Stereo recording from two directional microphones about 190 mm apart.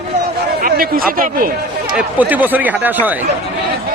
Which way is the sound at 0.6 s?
50° right (ahead or behind).